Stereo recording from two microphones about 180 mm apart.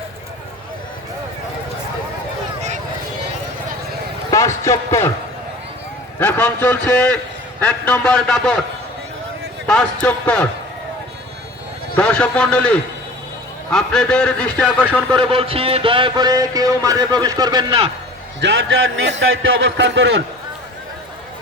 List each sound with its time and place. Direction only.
4.3 s a sound: 15° left (ahead or behind)
6.1 s a man's voice: 10° left (ahead or behind)
9.6 s a man's voice: 5° left (ahead or behind)
11.9 s a man's voice: 5° left (ahead or behind)
15.1 s a sound: 30° right (ahead or behind)
18.3 s a man's voice: 75° right (ahead or behind)